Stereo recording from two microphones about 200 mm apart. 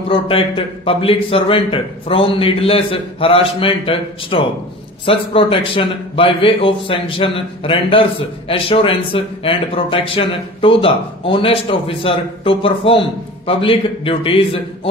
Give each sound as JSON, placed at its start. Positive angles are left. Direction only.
{"t": 0.1, "sound": "a man's voice", "side_deg": 25}